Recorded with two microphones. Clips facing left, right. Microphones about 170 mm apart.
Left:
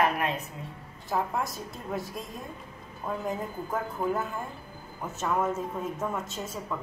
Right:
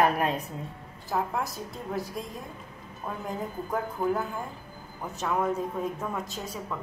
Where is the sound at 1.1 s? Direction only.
Centre (ahead or behind).